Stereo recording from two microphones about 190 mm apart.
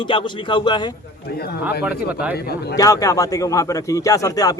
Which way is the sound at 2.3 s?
55° left (ahead or behind).